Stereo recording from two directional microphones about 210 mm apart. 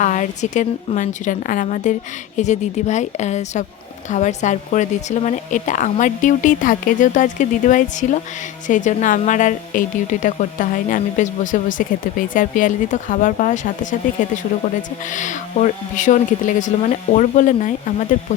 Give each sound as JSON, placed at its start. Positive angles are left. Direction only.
{"t": 0.0, "sound": "speech", "side_deg": 35}